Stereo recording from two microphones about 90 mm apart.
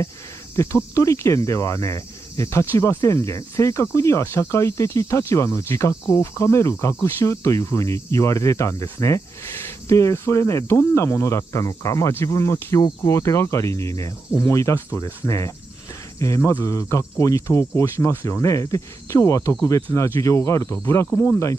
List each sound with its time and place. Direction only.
0.6 s cricket: 35° left (ahead or behind)
21.1 s speech: 15° left (ahead or behind)